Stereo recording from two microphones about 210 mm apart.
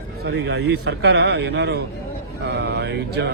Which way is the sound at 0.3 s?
55° right (ahead or behind).